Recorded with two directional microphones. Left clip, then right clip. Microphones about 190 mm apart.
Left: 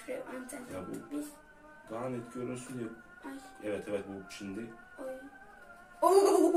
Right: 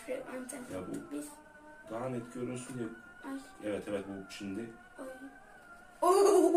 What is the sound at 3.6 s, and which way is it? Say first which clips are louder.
Speech: left 1 dB; centre (ahead or behind).